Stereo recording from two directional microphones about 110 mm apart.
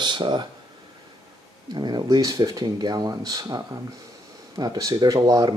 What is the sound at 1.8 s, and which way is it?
A man's voice, 40° right (ahead or behind).